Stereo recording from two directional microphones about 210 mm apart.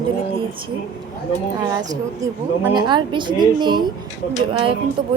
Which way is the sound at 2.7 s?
20° right (ahead or behind).